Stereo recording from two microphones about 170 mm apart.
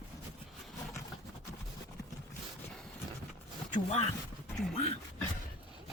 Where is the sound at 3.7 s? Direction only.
40° left (ahead or behind).